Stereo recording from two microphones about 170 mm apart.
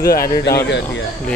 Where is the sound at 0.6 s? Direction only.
90° left.